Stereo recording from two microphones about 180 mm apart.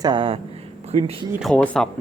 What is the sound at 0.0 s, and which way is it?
Speech, 25° right (ahead or behind).